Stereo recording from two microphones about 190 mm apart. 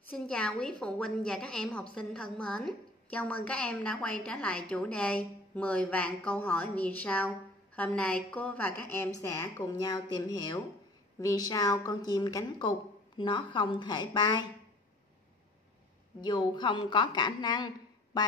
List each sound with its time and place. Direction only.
0.1 s a woman's voice: 5° left (ahead or behind); by 14.5 s 20° left (ahead or behind)
16.2 s a woman's voice: 25° left (ahead or behind)